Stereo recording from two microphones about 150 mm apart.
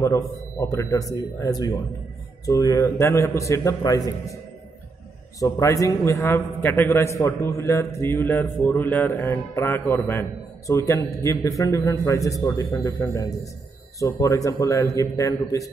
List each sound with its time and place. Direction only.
0.3 s a man's voice: 20° left (ahead or behind)
5.4 s a man's voice: 20° left (ahead or behind)